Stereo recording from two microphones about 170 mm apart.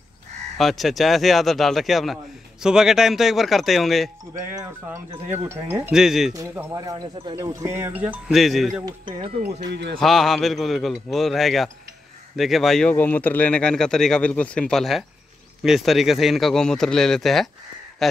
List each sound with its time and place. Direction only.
0.6 s speech: centre (ahead or behind)
4.6 s speech: 15° right (ahead or behind)
5.9 s speech: 5° right (ahead or behind)
6.3 s speech: 15° right (ahead or behind); by 8.8 s centre (ahead or behind)
8.8 s speech: 30° right (ahead or behind)
9.9 s speech: centre (ahead or behind)